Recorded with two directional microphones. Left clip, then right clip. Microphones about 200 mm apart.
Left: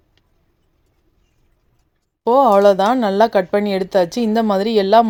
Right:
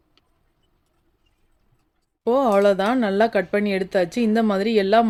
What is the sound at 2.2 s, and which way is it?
Speech, 15° left (ahead or behind).